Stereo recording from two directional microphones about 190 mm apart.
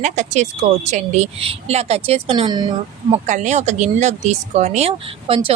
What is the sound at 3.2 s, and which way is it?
Speech, 40° right (ahead or behind).